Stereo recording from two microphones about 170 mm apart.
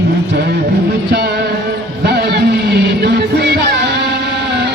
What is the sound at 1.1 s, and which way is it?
Music, 75° right (ahead or behind).